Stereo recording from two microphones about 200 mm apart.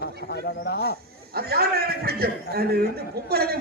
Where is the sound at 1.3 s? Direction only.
50° right (ahead or behind).